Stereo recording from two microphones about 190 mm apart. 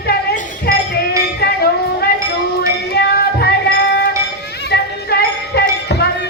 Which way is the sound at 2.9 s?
60° left (ahead or behind).